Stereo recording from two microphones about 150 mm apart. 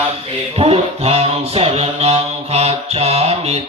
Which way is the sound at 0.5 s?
40° right (ahead or behind).